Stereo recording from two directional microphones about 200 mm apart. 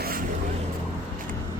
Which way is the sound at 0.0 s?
45° right (ahead or behind).